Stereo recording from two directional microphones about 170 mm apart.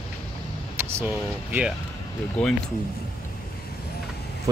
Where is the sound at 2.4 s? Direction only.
5° left (ahead or behind).